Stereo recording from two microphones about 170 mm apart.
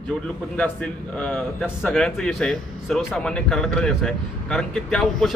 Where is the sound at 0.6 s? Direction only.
5° left (ahead or behind).